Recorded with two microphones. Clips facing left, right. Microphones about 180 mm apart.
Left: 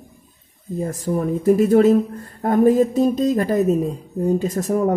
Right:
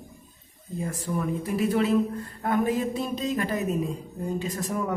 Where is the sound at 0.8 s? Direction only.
40° left (ahead or behind).